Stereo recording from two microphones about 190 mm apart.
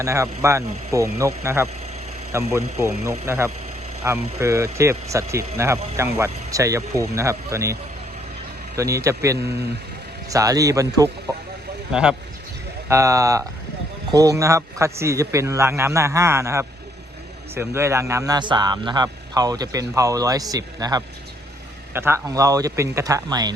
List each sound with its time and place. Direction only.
0.0 s a man's voice: 15° right (ahead or behind)
11.9 s speech: 5° right (ahead or behind)
12.9 s a man's voice: 15° right (ahead or behind)